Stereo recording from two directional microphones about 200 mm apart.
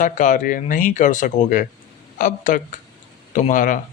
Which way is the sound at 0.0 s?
40° left (ahead or behind).